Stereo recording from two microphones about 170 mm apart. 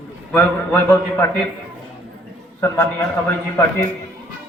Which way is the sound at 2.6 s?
15° left (ahead or behind).